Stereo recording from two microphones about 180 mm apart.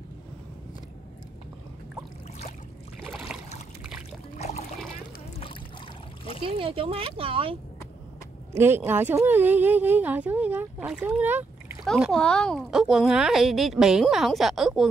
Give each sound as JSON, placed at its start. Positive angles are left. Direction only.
{"t": 3.0, "sound": "boat", "side_deg": 0}
{"t": 4.4, "sound": "a sound", "side_deg": 40}
{"t": 6.4, "sound": "speech", "side_deg": -30}
{"t": 8.5, "sound": "speech", "side_deg": -15}
{"t": 11.8, "sound": "speech", "side_deg": 0}